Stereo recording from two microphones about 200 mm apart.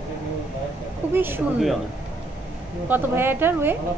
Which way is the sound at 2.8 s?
10° right (ahead or behind).